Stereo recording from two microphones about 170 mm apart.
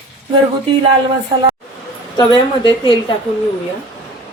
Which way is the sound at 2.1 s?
25° left (ahead or behind).